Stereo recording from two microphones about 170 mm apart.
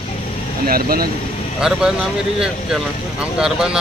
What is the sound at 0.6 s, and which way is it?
Speech, 60° right (ahead or behind).